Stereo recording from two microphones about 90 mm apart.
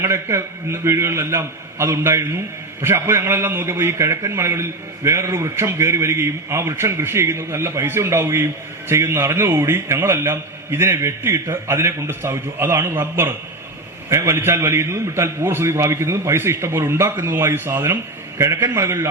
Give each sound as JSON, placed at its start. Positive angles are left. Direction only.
{"t": 0.0, "sound": "a man's voice", "side_deg": -30}